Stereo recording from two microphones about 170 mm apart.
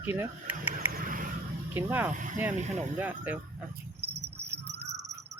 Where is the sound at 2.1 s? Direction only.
50° right (ahead or behind).